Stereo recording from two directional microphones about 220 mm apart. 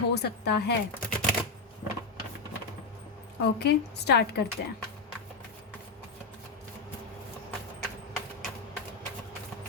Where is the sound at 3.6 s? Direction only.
50° left (ahead or behind).